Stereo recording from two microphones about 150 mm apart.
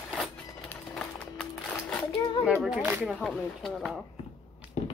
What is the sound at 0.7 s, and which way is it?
Music, 5° left (ahead or behind).